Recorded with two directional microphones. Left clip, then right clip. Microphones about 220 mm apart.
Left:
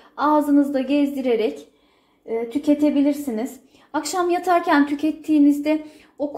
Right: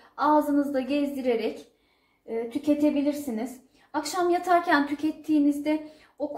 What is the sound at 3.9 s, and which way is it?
A woman's voice, 35° left (ahead or behind).